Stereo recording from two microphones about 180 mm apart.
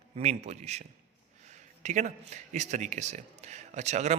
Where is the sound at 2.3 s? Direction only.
40° right (ahead or behind).